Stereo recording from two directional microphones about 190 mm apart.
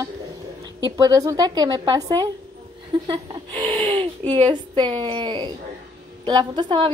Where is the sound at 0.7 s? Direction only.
20° right (ahead or behind).